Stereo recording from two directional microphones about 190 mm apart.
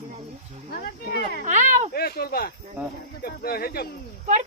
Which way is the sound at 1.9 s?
55° left (ahead or behind).